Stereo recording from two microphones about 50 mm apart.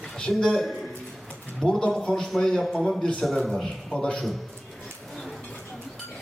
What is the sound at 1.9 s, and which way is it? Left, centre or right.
A man's voice, centre.